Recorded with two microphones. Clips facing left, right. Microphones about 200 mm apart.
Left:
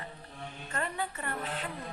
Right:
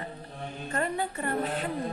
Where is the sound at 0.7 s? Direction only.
35° right (ahead or behind).